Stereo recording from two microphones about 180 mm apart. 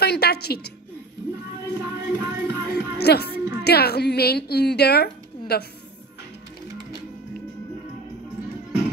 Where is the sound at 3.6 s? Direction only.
60° left (ahead or behind).